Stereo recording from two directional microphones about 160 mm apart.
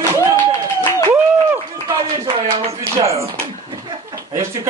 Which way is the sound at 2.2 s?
35° right (ahead or behind).